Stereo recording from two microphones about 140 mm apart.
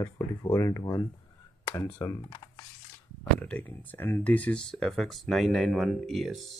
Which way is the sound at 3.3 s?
10° left (ahead or behind).